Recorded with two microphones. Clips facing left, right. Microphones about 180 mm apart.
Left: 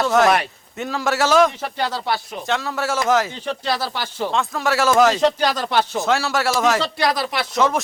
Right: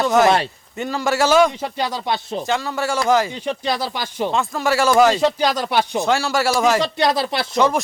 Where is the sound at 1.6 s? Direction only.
15° right (ahead or behind).